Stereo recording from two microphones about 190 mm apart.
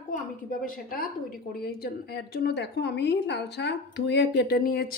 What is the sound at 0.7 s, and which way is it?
A woman's voice, 50° left (ahead or behind).